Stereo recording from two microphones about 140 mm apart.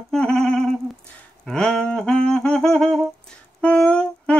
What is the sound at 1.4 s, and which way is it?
Humming, 5° left (ahead or behind).